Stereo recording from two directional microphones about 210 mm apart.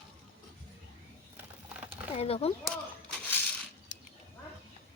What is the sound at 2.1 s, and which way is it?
Speech, 30° left (ahead or behind).